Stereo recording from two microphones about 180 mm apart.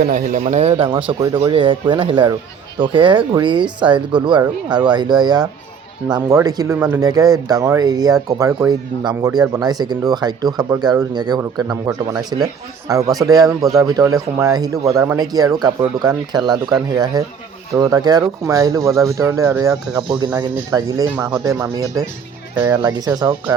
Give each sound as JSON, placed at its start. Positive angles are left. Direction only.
{"t": 0.0, "sound": "speech", "side_deg": -45}
{"t": 6.7, "sound": "speech", "side_deg": -10}
{"t": 7.0, "sound": "speech", "side_deg": -20}